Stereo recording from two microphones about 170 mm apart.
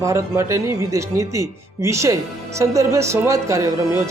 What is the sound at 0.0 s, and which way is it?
Speech, 15° right (ahead or behind).